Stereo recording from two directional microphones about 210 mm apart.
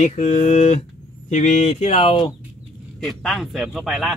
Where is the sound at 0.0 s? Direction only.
35° left (ahead or behind).